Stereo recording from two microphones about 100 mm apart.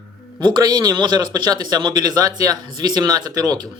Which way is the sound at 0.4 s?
45° right (ahead or behind).